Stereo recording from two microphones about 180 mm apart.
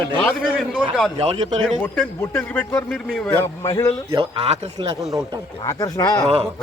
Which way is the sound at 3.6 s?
20° left (ahead or behind).